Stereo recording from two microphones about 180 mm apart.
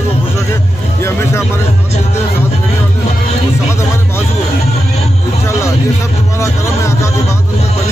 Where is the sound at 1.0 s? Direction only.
15° left (ahead or behind).